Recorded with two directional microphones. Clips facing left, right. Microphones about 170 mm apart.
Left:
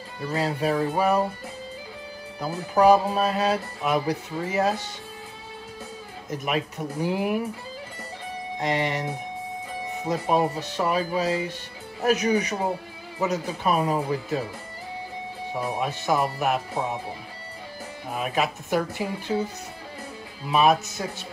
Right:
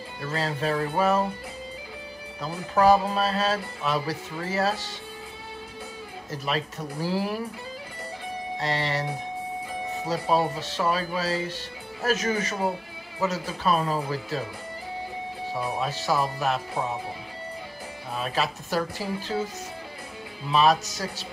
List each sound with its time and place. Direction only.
0.2 s music: 10° left (ahead or behind)
2.4 s music: 15° left (ahead or behind)
6.3 s music: 15° left (ahead or behind)
8.5 s music: 15° left (ahead or behind)
10.0 s music: 15° left (ahead or behind)
15.8 s music: 15° left (ahead or behind)
18.1 s music: 15° left (ahead or behind)